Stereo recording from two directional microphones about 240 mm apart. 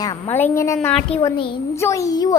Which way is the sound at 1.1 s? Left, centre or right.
Centre.